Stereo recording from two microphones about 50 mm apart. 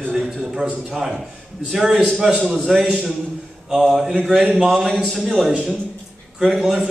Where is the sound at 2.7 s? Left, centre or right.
Centre.